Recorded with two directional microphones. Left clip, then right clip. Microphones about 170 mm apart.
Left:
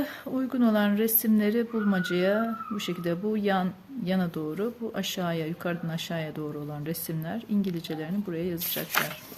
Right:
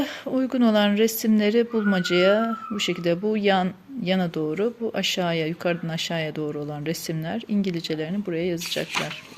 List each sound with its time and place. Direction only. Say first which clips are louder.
0.0 s speech: right 6 dB; 20° right (ahead or behind)